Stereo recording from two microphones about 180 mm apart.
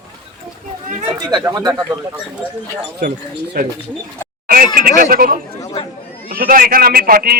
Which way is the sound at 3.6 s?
55° right (ahead or behind).